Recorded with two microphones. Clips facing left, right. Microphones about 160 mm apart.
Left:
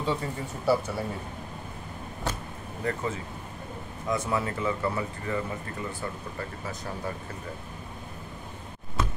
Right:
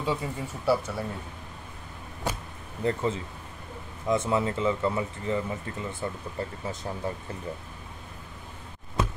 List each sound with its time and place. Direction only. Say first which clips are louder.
0.0 s speech: even; 10° right (ahead or behind)
2.3 s vehicle: right 1 dB; 10° right (ahead or behind)
2.8 s speech: right 4 dB; 25° right (ahead or behind)